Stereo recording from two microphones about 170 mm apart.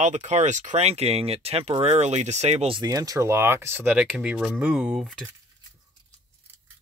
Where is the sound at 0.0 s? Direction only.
40° right (ahead or behind); by 5.2 s centre (ahead or behind).